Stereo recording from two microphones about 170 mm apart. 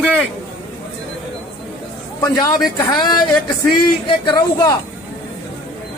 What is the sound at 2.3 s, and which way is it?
Speech, 20° left (ahead or behind).